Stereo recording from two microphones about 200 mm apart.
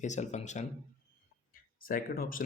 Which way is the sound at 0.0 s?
35° left (ahead or behind).